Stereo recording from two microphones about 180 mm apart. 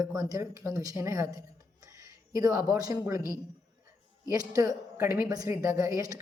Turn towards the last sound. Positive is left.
turn(degrees=-20)  # may be behind; listen again after turning